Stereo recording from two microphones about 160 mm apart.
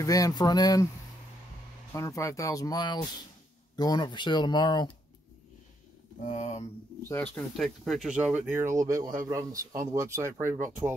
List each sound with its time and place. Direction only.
0.0 s speech: 20° left (ahead or behind)
1.9 s speech: 20° left (ahead or behind)
6.2 s speech: 50° left (ahead or behind)
7.3 s speech: centre (ahead or behind)